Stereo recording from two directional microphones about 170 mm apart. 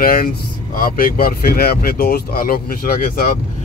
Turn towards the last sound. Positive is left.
turn(degrees=60)  # may be behind; listen again after turning